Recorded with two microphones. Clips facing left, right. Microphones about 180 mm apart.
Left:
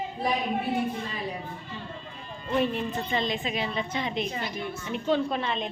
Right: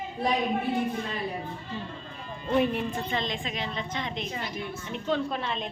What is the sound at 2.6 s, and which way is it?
Speech, 15° right (ahead or behind).